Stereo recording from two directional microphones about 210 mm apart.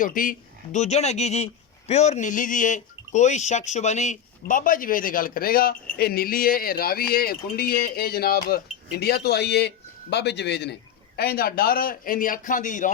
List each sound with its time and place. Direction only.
0.0 s a man's voice: 40° left (ahead or behind)